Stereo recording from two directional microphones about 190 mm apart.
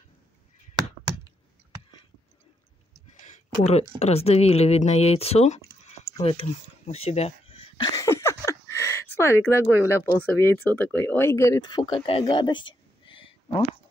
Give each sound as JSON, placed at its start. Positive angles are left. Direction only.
{"t": 4.0, "sound": "speech", "side_deg": 35}